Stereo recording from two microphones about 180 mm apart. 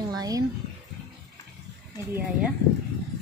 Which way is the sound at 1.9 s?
10° right (ahead or behind).